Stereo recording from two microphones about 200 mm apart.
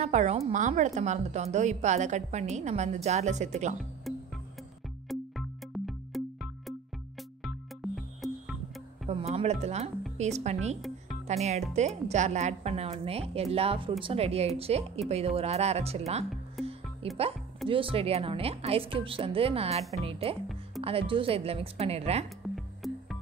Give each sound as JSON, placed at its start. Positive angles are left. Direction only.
{"t": 0.0, "sound": "a woman's voice", "side_deg": -35}
{"t": 4.1, "sound": "music", "side_deg": 0}
{"t": 7.4, "sound": "music", "side_deg": 0}
{"t": 9.0, "sound": "a woman's voice", "side_deg": -30}
{"t": 16.6, "sound": "music", "side_deg": 0}
{"t": 17.0, "sound": "music", "side_deg": -30}
{"t": 17.6, "sound": "speech", "side_deg": -25}
{"t": 22.4, "sound": "music", "side_deg": 0}